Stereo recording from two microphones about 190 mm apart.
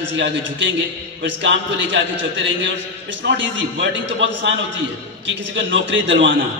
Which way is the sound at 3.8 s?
70° right (ahead or behind).